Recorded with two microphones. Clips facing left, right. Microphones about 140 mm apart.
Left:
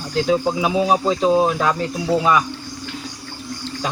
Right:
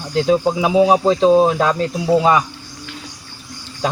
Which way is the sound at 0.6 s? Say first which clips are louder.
Right 4 dB; 20° right (ahead or behind).